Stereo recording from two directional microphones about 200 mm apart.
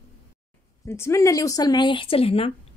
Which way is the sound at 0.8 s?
15° left (ahead or behind).